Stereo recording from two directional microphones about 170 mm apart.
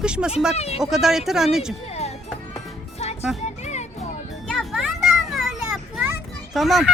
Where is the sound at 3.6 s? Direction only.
40° left (ahead or behind).